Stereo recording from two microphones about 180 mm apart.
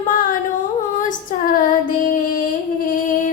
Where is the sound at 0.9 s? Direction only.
45° left (ahead or behind).